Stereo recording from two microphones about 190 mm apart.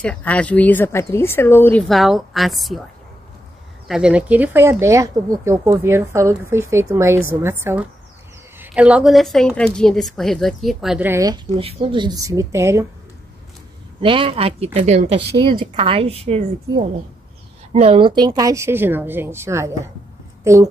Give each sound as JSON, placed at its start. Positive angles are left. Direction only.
{"t": 0.0, "sound": "speech", "side_deg": 5}
{"t": 3.8, "sound": "speech", "side_deg": -5}
{"t": 14.0, "sound": "speech", "side_deg": -25}
{"t": 17.7, "sound": "speech", "side_deg": -30}